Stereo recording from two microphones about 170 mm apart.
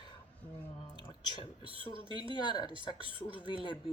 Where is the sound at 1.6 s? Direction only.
30° right (ahead or behind).